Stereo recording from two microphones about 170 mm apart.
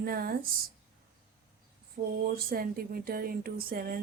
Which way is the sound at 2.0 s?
50° right (ahead or behind).